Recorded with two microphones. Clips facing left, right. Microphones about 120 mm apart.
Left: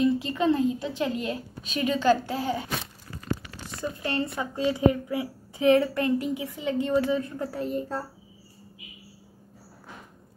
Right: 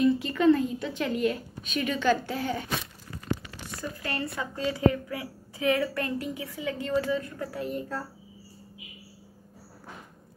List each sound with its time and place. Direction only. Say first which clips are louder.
0.0 s a woman's voice: right 1 dB; 25° left (ahead or behind)
3.8 s a woman's voice: left 5 dB; 25° left (ahead or behind)